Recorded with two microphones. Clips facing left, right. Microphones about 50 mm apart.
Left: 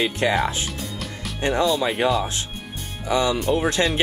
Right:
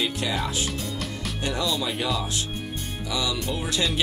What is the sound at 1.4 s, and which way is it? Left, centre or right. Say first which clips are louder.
Speech: left 7 dB; left.